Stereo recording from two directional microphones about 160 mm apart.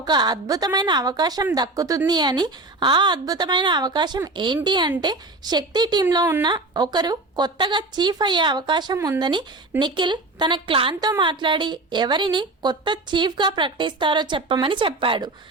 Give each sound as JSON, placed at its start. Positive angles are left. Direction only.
{"t": 0.0, "sound": "a woman's voice", "side_deg": -25}